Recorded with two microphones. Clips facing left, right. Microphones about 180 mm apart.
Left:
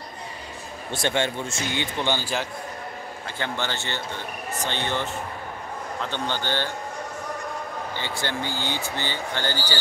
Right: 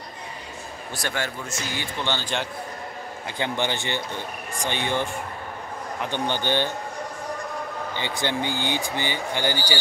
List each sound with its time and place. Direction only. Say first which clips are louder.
0.9 s speech: left 5 dB; 25° left (ahead or behind); by 2.4 s 10° left (ahead or behind)
3.3 s speech: right 3 dB; 15° right (ahead or behind)
7.9 s speech: right 3 dB; 15° right (ahead or behind)